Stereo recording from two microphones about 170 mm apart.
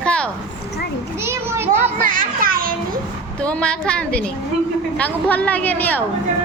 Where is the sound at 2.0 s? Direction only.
55° right (ahead or behind).